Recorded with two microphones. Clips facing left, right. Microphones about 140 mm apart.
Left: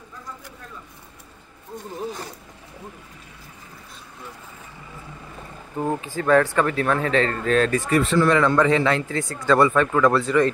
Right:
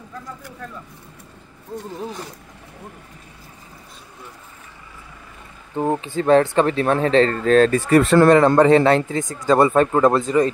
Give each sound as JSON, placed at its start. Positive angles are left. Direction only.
{"t": 5.8, "sound": "speech", "side_deg": -25}
{"t": 8.0, "sound": "speech", "side_deg": -75}
{"t": 8.3, "sound": "a man's voice", "side_deg": -40}
{"t": 9.1, "sound": "speech", "side_deg": -15}
{"t": 9.6, "sound": "speech", "side_deg": -35}